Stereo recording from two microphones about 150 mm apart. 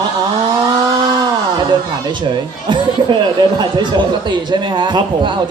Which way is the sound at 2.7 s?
30° right (ahead or behind).